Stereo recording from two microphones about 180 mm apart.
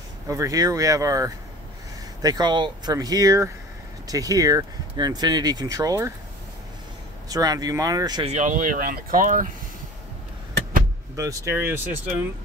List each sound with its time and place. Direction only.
0.3 s speech: 20° right (ahead or behind)
7.2 s speech: 20° right (ahead or behind)
8.3 s speech: 40° right (ahead or behind)
11.1 s speech: 15° right (ahead or behind)